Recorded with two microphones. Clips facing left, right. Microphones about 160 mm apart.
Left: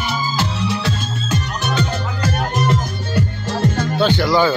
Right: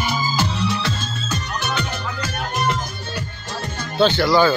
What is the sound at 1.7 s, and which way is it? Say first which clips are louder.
Music: left 4 dB; 35° left (ahead or behind).